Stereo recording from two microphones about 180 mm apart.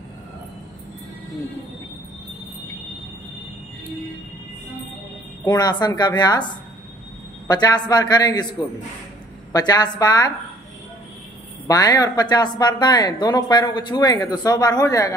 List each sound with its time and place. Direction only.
5.4 s speech: 20° left (ahead or behind)
9.5 s speech: 20° left (ahead or behind)
11.6 s speech: 20° left (ahead or behind)